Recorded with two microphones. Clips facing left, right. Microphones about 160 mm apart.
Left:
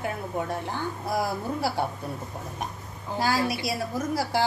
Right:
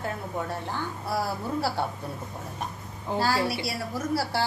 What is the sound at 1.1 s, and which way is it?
Speech, 15° left (ahead or behind).